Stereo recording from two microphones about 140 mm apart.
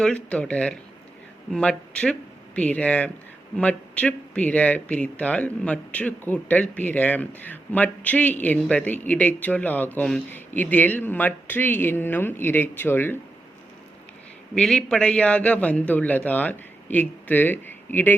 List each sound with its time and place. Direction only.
0.0 s speech: 10° left (ahead or behind)
14.5 s speech: 5° left (ahead or behind)